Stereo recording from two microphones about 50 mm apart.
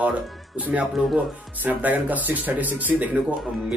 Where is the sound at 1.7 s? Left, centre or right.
Right.